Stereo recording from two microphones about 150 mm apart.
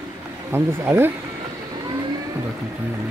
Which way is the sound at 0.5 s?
15° right (ahead or behind).